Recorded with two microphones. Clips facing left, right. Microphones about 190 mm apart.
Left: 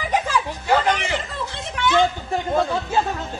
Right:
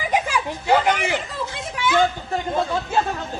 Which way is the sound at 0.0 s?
15° right (ahead or behind).